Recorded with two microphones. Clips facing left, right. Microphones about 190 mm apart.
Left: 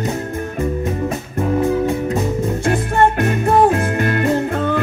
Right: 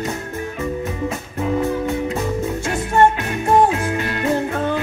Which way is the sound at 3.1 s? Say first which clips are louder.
Left 2 dB; 55° left (ahead or behind).